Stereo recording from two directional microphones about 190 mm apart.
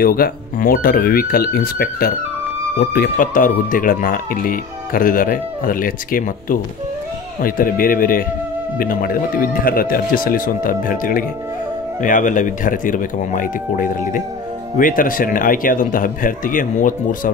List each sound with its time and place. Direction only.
0.0 s speech: 50° left (ahead or behind)